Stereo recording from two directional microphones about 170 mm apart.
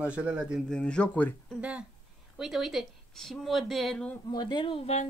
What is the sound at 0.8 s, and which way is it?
Speech, 5° left (ahead or behind).